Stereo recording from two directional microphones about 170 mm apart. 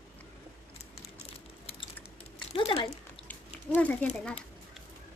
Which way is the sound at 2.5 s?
30° left (ahead or behind).